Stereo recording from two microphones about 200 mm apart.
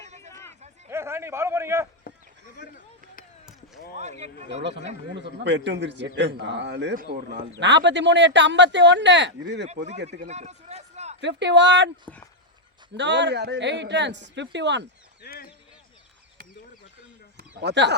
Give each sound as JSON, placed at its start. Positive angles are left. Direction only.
{"t": 0.9, "sound": "a man's voice", "side_deg": -15}
{"t": 2.0, "sound": "a sound", "side_deg": 45}
{"t": 4.0, "sound": "speech", "side_deg": -35}
{"t": 5.1, "sound": "a man's voice", "side_deg": -60}
{"t": 7.6, "sound": "a man's voice", "side_deg": -65}
{"t": 10.1, "sound": "a sound", "side_deg": -35}
{"t": 11.2, "sound": "a man's voice", "side_deg": -60}
{"t": 12.1, "sound": "speech", "side_deg": 5}
{"t": 13.0, "sound": "a man's voice", "side_deg": -60}
{"t": 15.2, "sound": "a sound", "side_deg": 50}
{"t": 17.5, "sound": "speech", "side_deg": -60}